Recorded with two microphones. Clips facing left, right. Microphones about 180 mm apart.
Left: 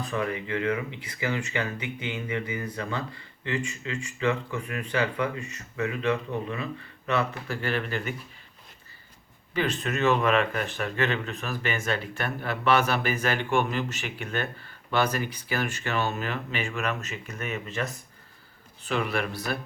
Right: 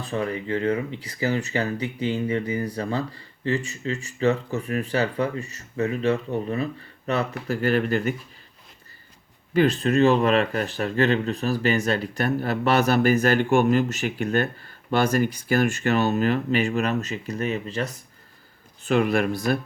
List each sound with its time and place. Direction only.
0.0 s speech: 35° right (ahead or behind)
9.5 s speech: 40° right (ahead or behind)
18.9 s speech: 45° right (ahead or behind)